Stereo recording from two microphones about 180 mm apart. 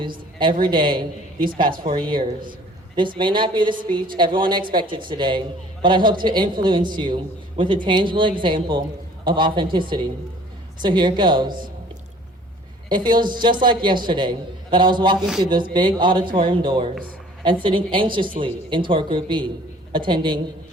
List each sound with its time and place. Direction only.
0.6 s a man's voice: 25° right (ahead or behind)
1.7 s a woman's voice: 50° right (ahead or behind)
2.0 s a man's voice: 25° right (ahead or behind)
12.9 s a man's voice: 25° right (ahead or behind)